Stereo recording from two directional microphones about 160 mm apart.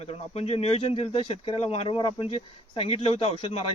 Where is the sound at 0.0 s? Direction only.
40° left (ahead or behind).